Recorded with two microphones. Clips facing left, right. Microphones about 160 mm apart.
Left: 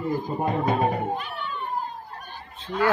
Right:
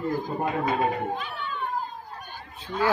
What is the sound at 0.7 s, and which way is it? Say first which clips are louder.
Speech: left 2 dB; 40° left (ahead or behind).